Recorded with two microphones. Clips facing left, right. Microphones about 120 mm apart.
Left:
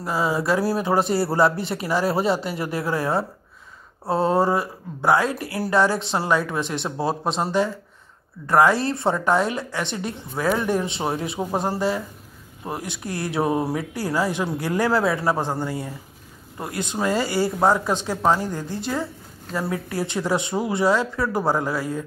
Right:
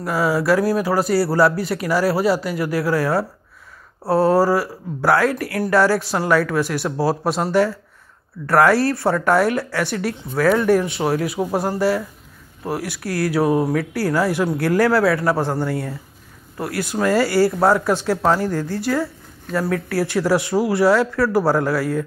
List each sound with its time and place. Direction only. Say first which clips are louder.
0.0 s speech: right 4 dB; 25° left (ahead or behind)
8.5 s speech: right 3 dB; 20° left (ahead or behind)